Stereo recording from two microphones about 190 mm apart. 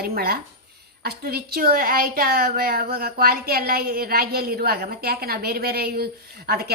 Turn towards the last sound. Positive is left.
turn(degrees=-55)  # may be behind; listen again after turning